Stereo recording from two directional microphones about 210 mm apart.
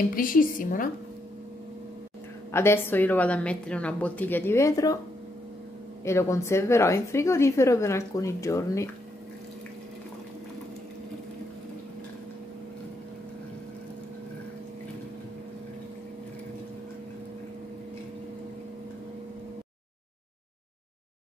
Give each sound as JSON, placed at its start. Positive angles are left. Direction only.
{"t": 0.1, "sound": "a woman's voice", "side_deg": 40}
{"t": 2.5, "sound": "a woman's voice", "side_deg": 10}
{"t": 6.0, "sound": "a woman's voice", "side_deg": 15}